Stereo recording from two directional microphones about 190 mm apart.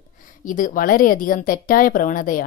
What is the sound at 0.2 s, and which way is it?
Speech, 45° left (ahead or behind).